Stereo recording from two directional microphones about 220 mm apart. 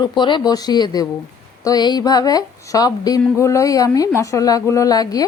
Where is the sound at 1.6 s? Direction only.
15° left (ahead or behind).